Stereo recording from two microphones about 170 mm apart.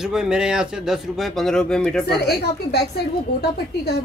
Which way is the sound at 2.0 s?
70° left (ahead or behind).